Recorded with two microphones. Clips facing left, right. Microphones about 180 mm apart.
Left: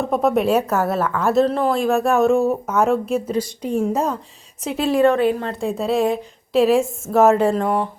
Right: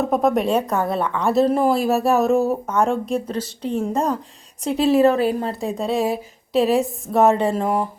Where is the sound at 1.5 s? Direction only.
10° right (ahead or behind).